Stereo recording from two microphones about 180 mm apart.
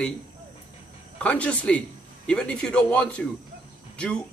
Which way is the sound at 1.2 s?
10° left (ahead or behind).